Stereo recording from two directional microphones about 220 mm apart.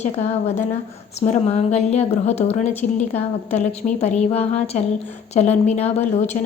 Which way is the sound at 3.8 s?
20° left (ahead or behind).